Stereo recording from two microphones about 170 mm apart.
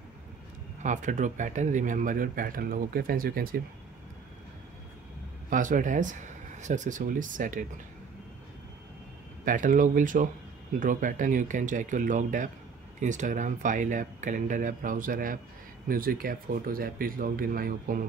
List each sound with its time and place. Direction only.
0.8 s speech: 45° right (ahead or behind)
5.5 s speech: 50° right (ahead or behind)
9.4 s speech: 50° right (ahead or behind)